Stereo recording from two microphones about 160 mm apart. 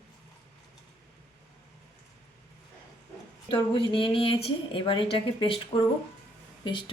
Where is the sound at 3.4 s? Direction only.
30° left (ahead or behind).